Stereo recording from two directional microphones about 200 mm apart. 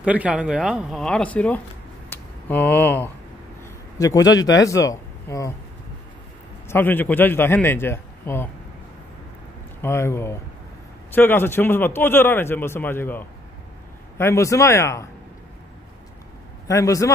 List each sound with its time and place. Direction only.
0.0 s speech: 5° right (ahead or behind)
2.0 s a sound: 10° left (ahead or behind)
4.0 s a man's voice: 15° left (ahead or behind)
6.7 s a man's voice: 10° left (ahead or behind)
9.8 s a man's voice: 15° left (ahead or behind)
16.6 s a man's voice: 15° left (ahead or behind)